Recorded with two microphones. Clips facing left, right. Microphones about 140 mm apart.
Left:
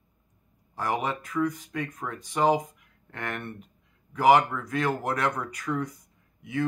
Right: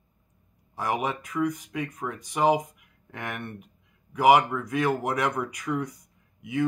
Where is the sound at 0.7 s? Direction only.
15° right (ahead or behind).